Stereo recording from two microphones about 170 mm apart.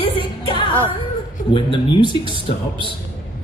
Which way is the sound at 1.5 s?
30° left (ahead or behind).